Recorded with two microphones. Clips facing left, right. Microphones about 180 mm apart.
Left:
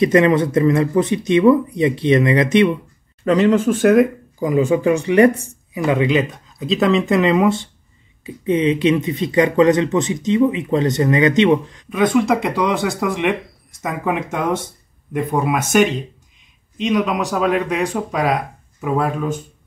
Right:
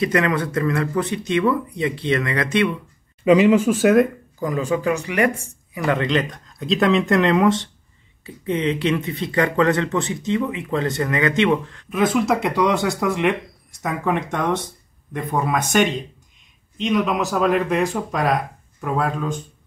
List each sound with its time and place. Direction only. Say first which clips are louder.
0.0 s speech: left 6 dB; 20° left (ahead or behind)
3.3 s speech: even; 10° right (ahead or behind)
4.4 s speech: left 6 dB; 20° left (ahead or behind)
5.8 s speech: left 4 dB; 15° left (ahead or behind)
11.9 s speech: left 3 dB; 5° right (ahead or behind)